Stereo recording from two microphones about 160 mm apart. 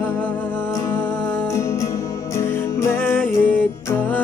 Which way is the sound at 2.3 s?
15° left (ahead or behind).